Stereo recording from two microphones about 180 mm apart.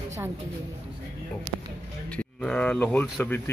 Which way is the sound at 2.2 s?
5° left (ahead or behind).